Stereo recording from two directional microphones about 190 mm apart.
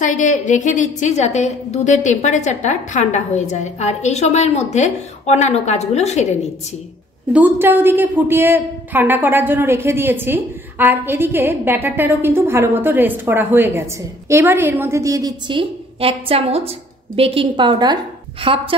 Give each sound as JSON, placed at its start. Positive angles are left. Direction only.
{"t": 0.0, "sound": "a woman's voice", "side_deg": 40}
{"t": 7.3, "sound": "a woman's voice", "side_deg": -10}